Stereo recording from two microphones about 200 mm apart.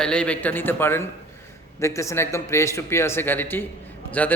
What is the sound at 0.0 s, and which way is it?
A man's voice, 5° left (ahead or behind).